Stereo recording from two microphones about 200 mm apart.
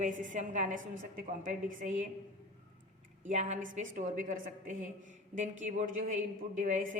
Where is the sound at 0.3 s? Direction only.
40° right (ahead or behind).